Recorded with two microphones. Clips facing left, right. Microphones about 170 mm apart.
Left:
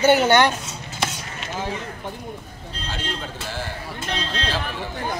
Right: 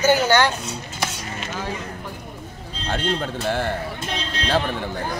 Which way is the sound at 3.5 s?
60° right (ahead or behind).